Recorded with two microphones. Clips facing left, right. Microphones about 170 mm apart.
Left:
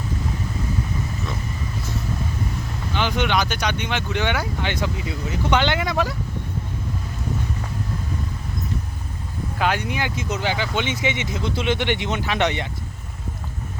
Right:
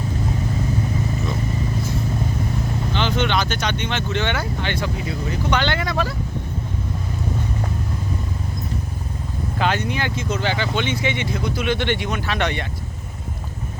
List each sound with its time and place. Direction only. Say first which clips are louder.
2.9 s speech: even; 10° left (ahead or behind)
9.6 s speech: right 1 dB; 10° left (ahead or behind)